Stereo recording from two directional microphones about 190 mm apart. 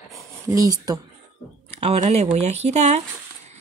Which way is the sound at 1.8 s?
35° right (ahead or behind).